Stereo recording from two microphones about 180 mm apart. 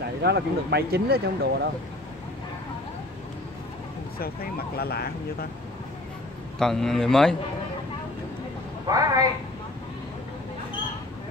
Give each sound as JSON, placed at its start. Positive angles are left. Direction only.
{"t": 0.2, "sound": "speech", "side_deg": -65}
{"t": 4.2, "sound": "speech", "side_deg": 60}
{"t": 6.6, "sound": "a man's voice", "side_deg": 0}
{"t": 8.8, "sound": "a woman's voice", "side_deg": -20}